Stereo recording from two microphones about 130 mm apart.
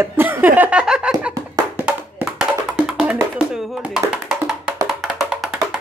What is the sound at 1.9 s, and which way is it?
Music, 10° right (ahead or behind).